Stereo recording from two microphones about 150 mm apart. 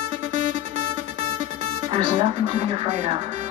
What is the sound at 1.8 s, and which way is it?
Speech, 30° right (ahead or behind).